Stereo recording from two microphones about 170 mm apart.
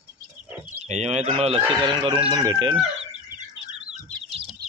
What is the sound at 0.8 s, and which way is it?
Speech, 40° right (ahead or behind).